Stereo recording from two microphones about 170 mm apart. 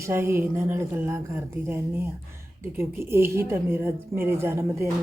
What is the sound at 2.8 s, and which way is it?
A woman's voice, 15° right (ahead or behind).